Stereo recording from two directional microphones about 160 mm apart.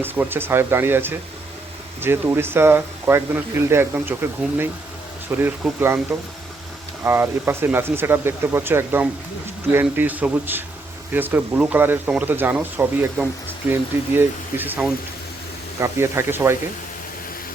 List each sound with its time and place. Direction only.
0.0 s speech: 10° right (ahead or behind)
5.4 s speech: 15° right (ahead or behind)